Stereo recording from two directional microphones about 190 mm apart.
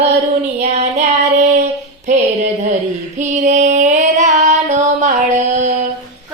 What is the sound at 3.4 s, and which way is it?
Music, 40° right (ahead or behind).